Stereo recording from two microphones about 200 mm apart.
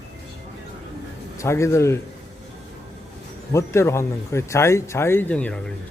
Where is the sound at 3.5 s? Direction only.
15° left (ahead or behind).